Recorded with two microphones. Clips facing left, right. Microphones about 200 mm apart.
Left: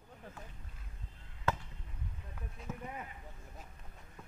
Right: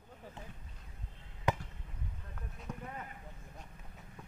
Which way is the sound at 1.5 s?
15° right (ahead or behind).